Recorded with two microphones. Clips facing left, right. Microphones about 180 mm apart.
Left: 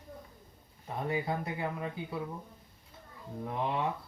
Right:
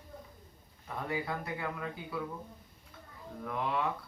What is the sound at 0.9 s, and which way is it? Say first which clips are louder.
Speech: left 3 dB; 25° left (ahead or behind).